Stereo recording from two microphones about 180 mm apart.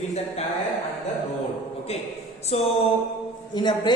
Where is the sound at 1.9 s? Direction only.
35° left (ahead or behind).